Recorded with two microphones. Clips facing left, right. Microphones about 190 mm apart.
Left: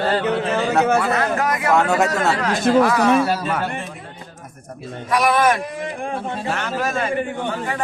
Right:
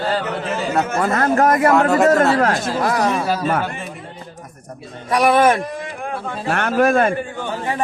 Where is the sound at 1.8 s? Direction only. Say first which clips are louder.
Right 3 dB; centre (ahead or behind).